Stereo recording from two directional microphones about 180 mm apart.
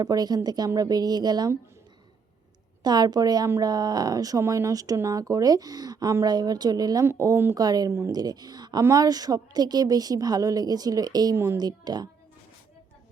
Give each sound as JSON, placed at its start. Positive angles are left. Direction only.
{"t": 0.0, "sound": "speech", "side_deg": -20}
{"t": 2.8, "sound": "speech", "side_deg": -25}